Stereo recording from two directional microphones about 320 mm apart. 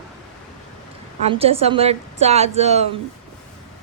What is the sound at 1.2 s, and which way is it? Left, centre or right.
A woman's voice, centre.